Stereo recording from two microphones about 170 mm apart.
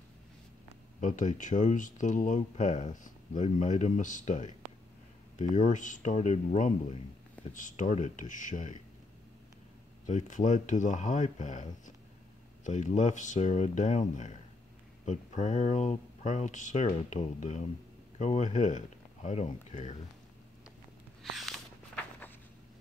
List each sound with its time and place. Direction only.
1.0 s speech: 50° left (ahead or behind)
10.0 s speech: 50° left (ahead or behind)
21.2 s a sound: centre (ahead or behind)